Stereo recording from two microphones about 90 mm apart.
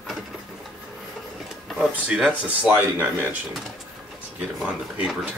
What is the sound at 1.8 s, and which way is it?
Speech, 5° right (ahead or behind).